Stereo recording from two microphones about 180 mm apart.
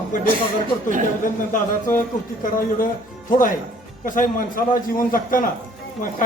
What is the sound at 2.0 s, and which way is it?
A man's voice, 50° left (ahead or behind).